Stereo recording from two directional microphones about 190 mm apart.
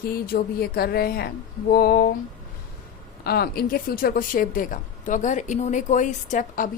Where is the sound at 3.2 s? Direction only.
55° left (ahead or behind).